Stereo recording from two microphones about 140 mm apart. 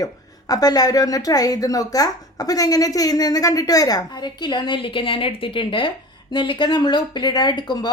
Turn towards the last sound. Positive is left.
turn(degrees=30)  # may be behind; listen again after turning